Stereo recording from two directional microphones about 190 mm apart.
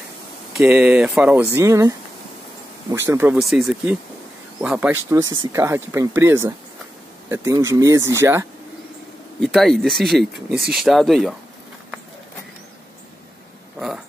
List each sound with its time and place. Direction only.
0.6 s speech: 5° right (ahead or behind)
3.3 s speech: centre (ahead or behind)
9.4 s speech: centre (ahead or behind)
13.7 s a sound: 5° right (ahead or behind)